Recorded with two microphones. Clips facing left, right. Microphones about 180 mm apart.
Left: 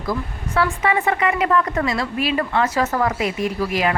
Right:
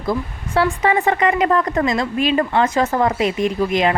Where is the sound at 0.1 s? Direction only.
30° right (ahead or behind).